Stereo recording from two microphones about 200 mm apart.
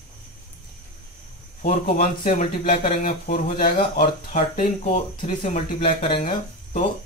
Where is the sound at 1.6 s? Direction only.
35° left (ahead or behind).